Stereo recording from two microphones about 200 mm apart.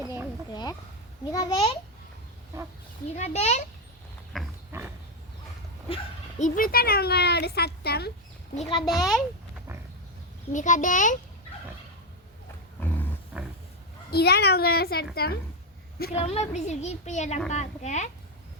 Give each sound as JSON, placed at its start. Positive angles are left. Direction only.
{"t": 0.0, "sound": "a sound", "side_deg": -10}
{"t": 0.5, "sound": "a child's voice", "side_deg": 20}
{"t": 3.2, "sound": "a child's voice", "side_deg": 35}
{"t": 4.3, "sound": "pig", "side_deg": 0}
{"t": 4.7, "sound": "pig", "side_deg": -10}
{"t": 6.4, "sound": "speech", "side_deg": 45}
{"t": 8.5, "sound": "a child's voice", "side_deg": 25}
{"t": 8.9, "sound": "speech", "side_deg": 0}
{"t": 10.5, "sound": "a child's voice", "side_deg": 40}
{"t": 12.8, "sound": "roaring cats", "side_deg": 10}
{"t": 13.3, "sound": "roaring cats", "side_deg": -5}
{"t": 14.1, "sound": "speech", "side_deg": 50}
{"t": 16.1, "sound": "a child's voice", "side_deg": 30}